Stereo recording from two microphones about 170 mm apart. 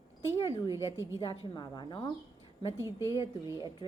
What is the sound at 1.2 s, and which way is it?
Speech, 25° left (ahead or behind).